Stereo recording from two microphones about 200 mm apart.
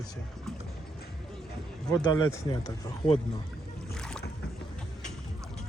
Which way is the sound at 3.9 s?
5° left (ahead or behind).